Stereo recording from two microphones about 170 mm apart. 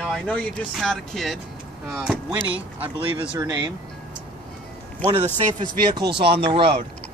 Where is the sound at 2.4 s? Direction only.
10° right (ahead or behind).